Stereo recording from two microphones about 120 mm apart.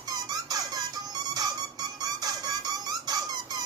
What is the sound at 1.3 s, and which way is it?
Music, 35° right (ahead or behind).